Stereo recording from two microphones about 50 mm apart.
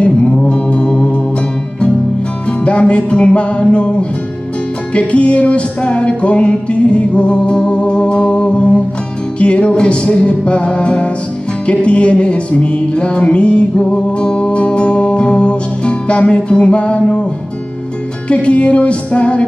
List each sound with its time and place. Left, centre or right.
0.0 s music: left
2.4 s music: left
18.3 s music: left